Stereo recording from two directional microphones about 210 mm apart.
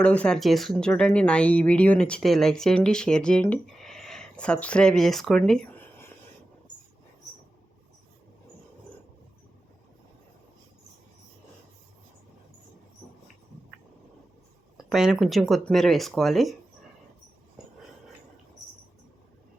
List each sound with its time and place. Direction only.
0.0 s speech: 5° left (ahead or behind)
14.8 s speech: centre (ahead or behind)